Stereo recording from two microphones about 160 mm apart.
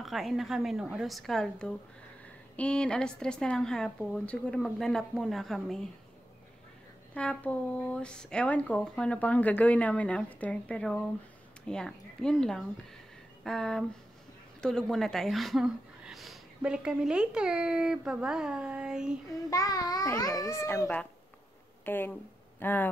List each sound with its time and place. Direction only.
0.0 s speech: centre (ahead or behind)
7.2 s a woman's voice: 10° left (ahead or behind)
19.5 s a child's voice: 25° left (ahead or behind)